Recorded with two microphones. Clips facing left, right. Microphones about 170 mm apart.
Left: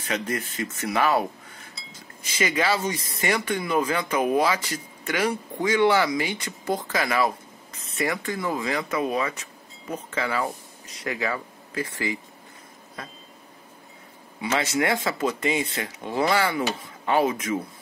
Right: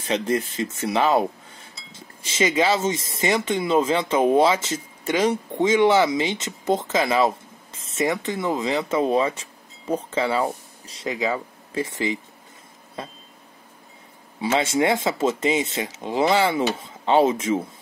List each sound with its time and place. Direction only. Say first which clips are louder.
0.0 s speech: right 5 dB; 25° right (ahead or behind)
14.4 s speech: right 4 dB; 25° right (ahead or behind)